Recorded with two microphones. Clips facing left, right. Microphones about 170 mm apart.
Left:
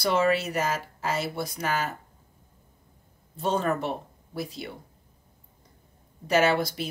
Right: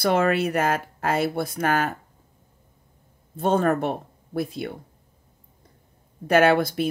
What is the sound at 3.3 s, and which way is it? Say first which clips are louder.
Speech: right 5 dB; 55° right (ahead or behind).